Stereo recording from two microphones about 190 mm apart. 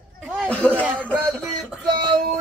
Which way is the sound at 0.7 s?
10° right (ahead or behind).